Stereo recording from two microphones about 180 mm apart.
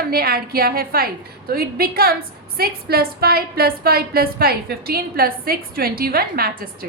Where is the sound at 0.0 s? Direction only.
55° right (ahead or behind).